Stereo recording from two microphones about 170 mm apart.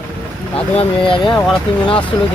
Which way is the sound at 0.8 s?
30° left (ahead or behind).